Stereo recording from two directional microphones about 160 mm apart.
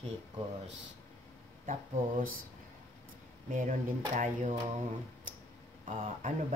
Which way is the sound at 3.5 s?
55° right (ahead or behind).